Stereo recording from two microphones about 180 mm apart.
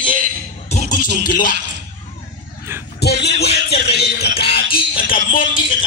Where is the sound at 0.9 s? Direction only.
50° left (ahead or behind).